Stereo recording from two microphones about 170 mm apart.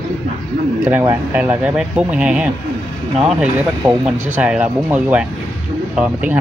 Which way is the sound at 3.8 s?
15° right (ahead or behind).